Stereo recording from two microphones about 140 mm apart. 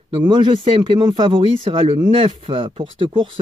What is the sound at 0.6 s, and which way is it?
Speech, 40° right (ahead or behind).